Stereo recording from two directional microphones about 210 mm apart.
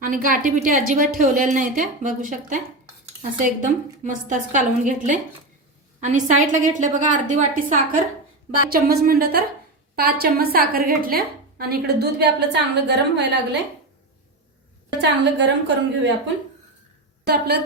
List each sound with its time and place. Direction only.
0.0 s a woman's voice: 40° right (ahead or behind)
15.2 s a woman's voice: 55° right (ahead or behind)
17.2 s a woman's voice: 50° right (ahead or behind)